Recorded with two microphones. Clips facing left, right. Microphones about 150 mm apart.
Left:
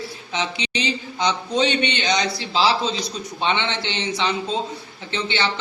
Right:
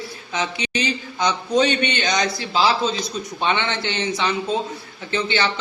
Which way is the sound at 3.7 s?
25° left (ahead or behind).